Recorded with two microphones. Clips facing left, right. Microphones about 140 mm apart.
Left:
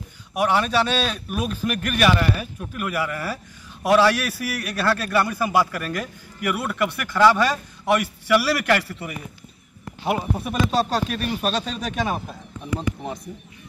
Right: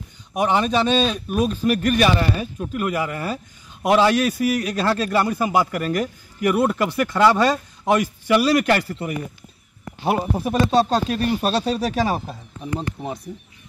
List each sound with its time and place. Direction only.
0.4 s a man's voice: 20° right (ahead or behind)
1.7 s a man's voice: 30° right (ahead or behind)
10.0 s speech: 30° right (ahead or behind)
13.0 s speech: centre (ahead or behind)